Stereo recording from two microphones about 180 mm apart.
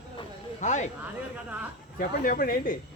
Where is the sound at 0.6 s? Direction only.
40° left (ahead or behind).